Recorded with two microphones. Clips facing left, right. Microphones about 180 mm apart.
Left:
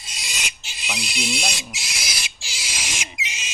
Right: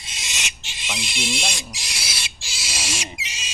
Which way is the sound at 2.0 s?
30° right (ahead or behind).